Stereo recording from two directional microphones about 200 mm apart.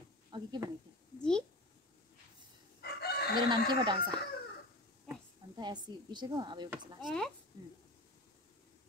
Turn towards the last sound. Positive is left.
turn(degrees=0)  # may be behind; listen again after turning